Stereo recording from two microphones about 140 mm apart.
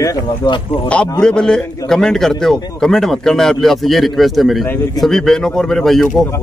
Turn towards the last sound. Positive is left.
turn(degrees=0)  # may be behind; listen again after turning